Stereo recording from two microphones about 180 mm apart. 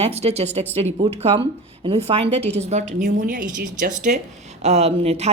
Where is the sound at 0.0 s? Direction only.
35° right (ahead or behind).